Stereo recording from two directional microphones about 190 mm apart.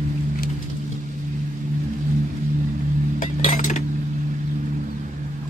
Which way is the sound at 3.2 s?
40° left (ahead or behind).